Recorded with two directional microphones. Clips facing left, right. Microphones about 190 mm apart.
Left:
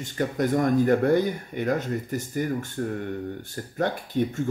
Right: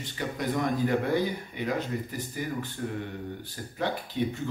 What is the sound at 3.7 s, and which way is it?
Speech, 50° left (ahead or behind).